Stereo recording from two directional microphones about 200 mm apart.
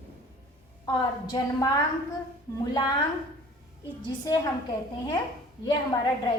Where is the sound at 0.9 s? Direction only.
20° left (ahead or behind).